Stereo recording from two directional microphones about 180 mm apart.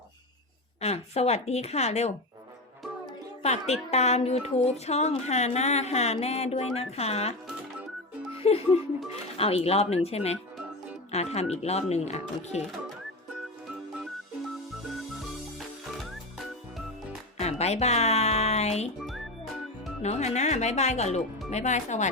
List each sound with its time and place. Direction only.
0.8 s speech: 35° left (ahead or behind)
3.4 s speech: 40° left (ahead or behind)
8.4 s speech: 35° left (ahead or behind)
17.3 s music: 35° left (ahead or behind)
20.0 s speech: 40° left (ahead or behind)